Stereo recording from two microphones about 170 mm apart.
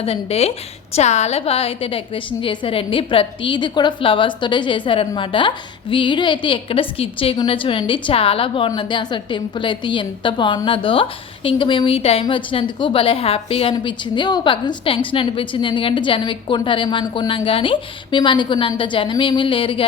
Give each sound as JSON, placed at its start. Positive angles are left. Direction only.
{"t": 0.0, "sound": "a woman's voice", "side_deg": 35}